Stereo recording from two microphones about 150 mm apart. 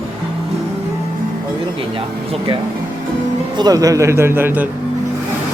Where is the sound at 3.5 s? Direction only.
25° right (ahead or behind).